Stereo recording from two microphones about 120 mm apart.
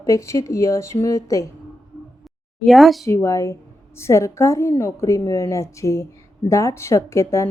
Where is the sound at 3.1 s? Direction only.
25° left (ahead or behind).